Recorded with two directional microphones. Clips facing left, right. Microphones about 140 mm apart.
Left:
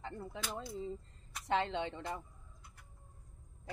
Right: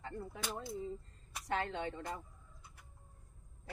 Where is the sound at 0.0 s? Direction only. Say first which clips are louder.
Even; 20° left (ahead or behind).